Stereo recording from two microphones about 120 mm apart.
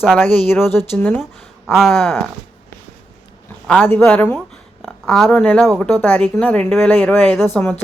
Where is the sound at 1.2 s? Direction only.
5° right (ahead or behind).